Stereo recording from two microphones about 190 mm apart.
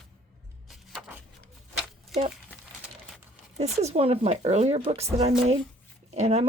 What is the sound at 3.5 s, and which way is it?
Speech, 35° right (ahead or behind).